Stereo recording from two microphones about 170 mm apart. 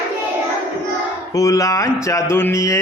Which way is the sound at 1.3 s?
20° left (ahead or behind).